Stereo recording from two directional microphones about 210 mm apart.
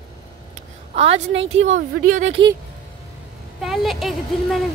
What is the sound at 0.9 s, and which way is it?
A woman's voice, 30° right (ahead or behind).